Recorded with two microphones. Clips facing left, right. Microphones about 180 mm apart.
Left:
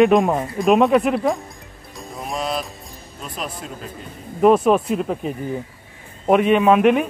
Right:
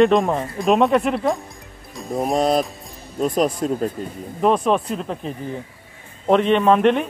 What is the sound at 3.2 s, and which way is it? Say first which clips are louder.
Speech: right 12 dB; 40° right (ahead or behind).